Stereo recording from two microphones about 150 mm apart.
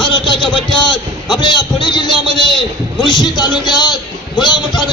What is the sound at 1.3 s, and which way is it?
A man's voice, 35° left (ahead or behind).